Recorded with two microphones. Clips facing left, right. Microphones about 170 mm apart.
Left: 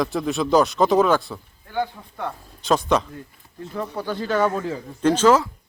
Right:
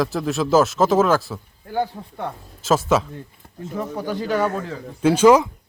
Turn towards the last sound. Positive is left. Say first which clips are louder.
# right 3 dB
turn(degrees=-15)  # may be behind; listen again after turning